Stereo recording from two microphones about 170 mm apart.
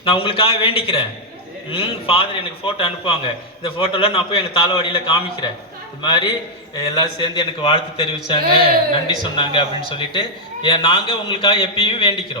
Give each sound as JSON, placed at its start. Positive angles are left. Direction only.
{"t": 0.0, "sound": "a man's voice", "side_deg": 30}